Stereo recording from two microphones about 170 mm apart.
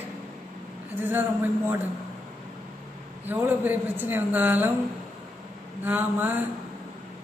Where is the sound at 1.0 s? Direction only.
10° right (ahead or behind).